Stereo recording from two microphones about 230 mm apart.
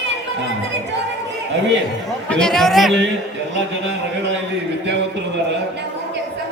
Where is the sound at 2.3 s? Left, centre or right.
Centre.